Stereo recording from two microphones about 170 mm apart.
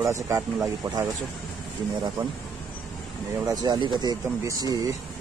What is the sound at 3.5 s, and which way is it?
Speech, 25° right (ahead or behind).